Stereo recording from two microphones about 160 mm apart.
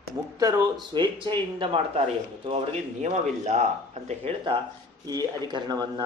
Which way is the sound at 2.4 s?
40° right (ahead or behind).